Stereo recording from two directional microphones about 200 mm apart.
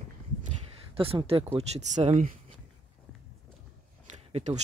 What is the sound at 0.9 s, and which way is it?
Speech, 30° right (ahead or behind).